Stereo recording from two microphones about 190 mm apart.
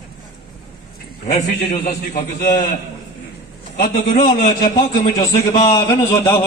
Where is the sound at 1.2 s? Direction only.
40° left (ahead or behind).